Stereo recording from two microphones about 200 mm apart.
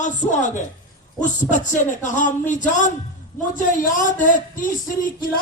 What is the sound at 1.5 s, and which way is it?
A man's voice, 40° left (ahead or behind).